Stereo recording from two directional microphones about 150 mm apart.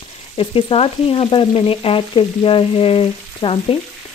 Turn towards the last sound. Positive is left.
turn(degrees=40)  # may be behind; listen again after turning